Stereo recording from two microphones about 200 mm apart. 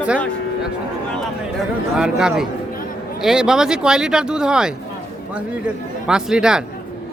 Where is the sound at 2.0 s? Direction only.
5° right (ahead or behind).